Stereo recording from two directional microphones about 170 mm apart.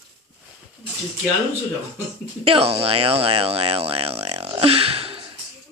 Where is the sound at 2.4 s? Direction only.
35° right (ahead or behind).